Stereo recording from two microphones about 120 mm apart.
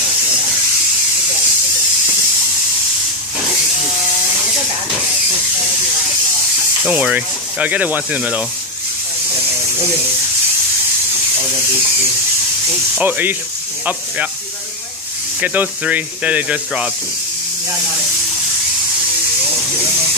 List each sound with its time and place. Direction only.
6.8 s speech: 10° right (ahead or behind)
13.0 s speech: 15° right (ahead or behind)
15.4 s speech: 15° right (ahead or behind)